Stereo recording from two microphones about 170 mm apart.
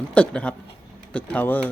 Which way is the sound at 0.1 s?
5° left (ahead or behind).